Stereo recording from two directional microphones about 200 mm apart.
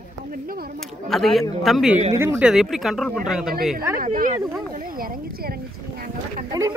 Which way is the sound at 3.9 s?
45° right (ahead or behind).